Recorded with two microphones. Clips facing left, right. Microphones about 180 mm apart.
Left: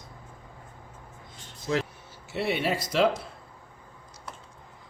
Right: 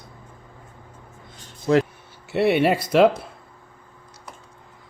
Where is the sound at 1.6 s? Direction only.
55° right (ahead or behind).